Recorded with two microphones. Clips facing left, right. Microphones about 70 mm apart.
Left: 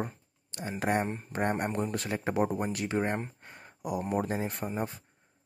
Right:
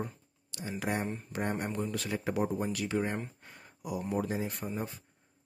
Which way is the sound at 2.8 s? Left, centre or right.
Left.